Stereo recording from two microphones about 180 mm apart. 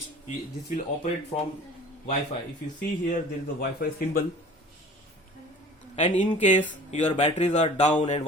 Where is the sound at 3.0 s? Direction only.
55° left (ahead or behind).